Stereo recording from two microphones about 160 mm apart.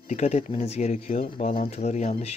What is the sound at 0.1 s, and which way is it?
Speech, 45° left (ahead or behind).